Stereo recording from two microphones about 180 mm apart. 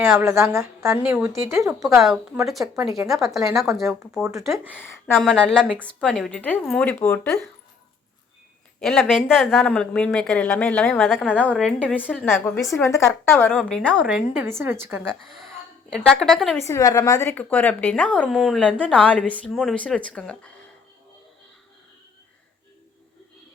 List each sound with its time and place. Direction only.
0.0 s speech: 15° right (ahead or behind)
1.8 s speech: centre (ahead or behind)
2.6 s speech: 15° right (ahead or behind)
3.7 s speech: centre (ahead or behind)
4.2 s speech: 15° right (ahead or behind)
4.8 s a woman's voice: 15° left (ahead or behind)
5.1 s speech: centre (ahead or behind)
8.8 s speech: centre (ahead or behind)
12.7 s a woman's voice: 15° left (ahead or behind)
14.0 s speech: 10° right (ahead or behind)
15.0 s speech: centre (ahead or behind)
16.6 s a woman's voice: 15° left (ahead or behind)